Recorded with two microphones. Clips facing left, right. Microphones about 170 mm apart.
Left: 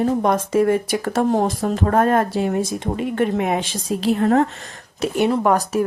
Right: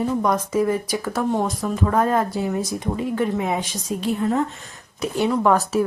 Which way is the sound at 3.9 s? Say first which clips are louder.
Left 5 dB; 85° left.